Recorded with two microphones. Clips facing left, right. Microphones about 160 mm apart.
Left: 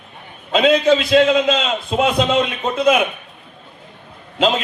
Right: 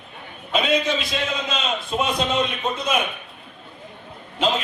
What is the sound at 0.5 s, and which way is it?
A man's voice, 90° left.